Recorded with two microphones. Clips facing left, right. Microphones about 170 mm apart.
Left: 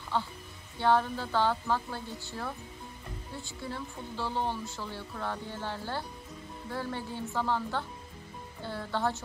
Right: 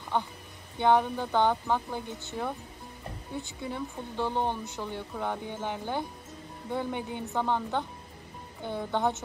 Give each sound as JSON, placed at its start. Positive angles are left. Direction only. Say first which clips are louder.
{"t": 0.1, "sound": "a woman's voice", "louder": "right 2 dB", "side_deg": -15}